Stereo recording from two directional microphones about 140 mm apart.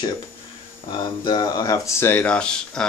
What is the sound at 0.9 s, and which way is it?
Speech, 30° left (ahead or behind).